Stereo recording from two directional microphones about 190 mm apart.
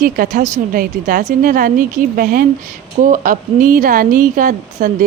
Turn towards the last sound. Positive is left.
turn(degrees=-45)  # may be behind; listen again after turning